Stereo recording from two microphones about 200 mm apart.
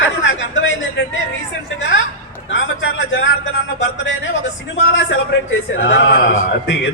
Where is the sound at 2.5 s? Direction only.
70° left (ahead or behind).